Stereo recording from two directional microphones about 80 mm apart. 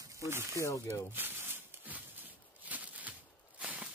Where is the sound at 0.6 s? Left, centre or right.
Left.